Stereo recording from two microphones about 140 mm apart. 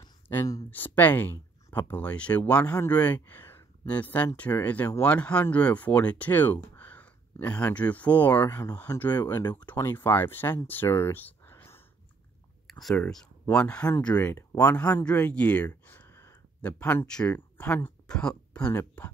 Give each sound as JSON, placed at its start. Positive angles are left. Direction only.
{"t": 0.3, "sound": "speech", "side_deg": 20}
{"t": 8.5, "sound": "speech", "side_deg": 25}
{"t": 12.6, "sound": "speech", "side_deg": 0}